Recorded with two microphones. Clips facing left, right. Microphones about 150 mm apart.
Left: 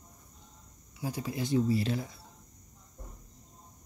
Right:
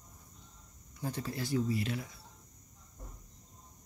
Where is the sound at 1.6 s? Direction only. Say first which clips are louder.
Left 5 dB; 30° left (ahead or behind).